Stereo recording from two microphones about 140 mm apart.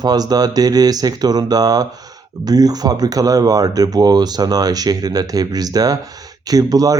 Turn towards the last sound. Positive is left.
turn(degrees=-25)  # may be behind; listen again after turning